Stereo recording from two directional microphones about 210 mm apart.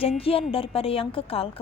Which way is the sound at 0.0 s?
25° left (ahead or behind).